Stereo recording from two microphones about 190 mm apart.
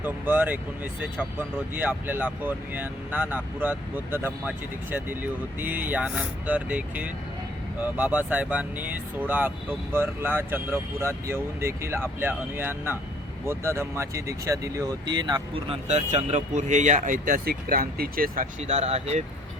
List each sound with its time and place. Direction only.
0.0 s speech: 10° right (ahead or behind)
15.9 s speech: 35° right (ahead or behind)
18.7 s speech: 35° right (ahead or behind)